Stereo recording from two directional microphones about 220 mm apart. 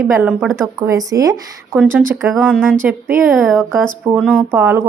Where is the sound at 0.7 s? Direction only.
15° right (ahead or behind).